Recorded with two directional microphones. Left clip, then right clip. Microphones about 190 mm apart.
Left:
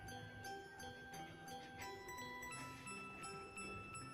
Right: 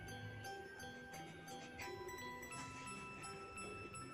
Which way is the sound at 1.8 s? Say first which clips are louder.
Right 3 dB; centre (ahead or behind).